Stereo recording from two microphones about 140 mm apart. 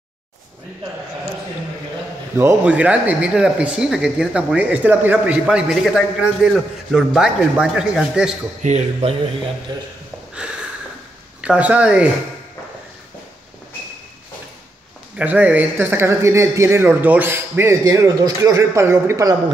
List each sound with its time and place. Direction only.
2.3 s a man's voice: 15° right (ahead or behind)
8.6 s speech: 55° right (ahead or behind)
9.7 s speech: 30° right (ahead or behind)
11.4 s speech: 10° right (ahead or behind)
15.1 s speech: 10° right (ahead or behind)